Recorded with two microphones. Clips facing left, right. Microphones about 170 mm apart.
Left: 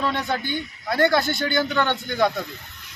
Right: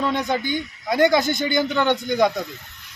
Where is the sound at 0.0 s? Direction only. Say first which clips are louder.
Right 3 dB; 15° right (ahead or behind).